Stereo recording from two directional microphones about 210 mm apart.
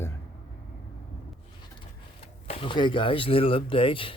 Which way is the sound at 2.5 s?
25° left (ahead or behind).